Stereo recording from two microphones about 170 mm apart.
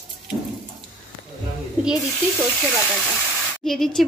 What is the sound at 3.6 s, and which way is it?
Speech, centre (ahead or behind).